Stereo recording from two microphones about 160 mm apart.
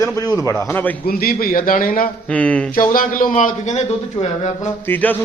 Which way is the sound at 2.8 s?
60° left (ahead or behind).